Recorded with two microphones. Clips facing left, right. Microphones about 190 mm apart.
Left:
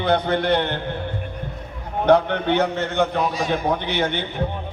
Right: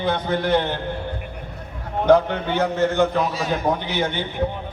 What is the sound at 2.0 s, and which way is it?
A man's voice, 65° left (ahead or behind).